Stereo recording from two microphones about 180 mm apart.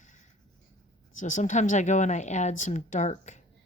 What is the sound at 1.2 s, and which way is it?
Speech, 45° left (ahead or behind).